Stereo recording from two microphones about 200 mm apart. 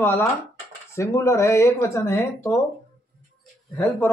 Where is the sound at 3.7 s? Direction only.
5° left (ahead or behind).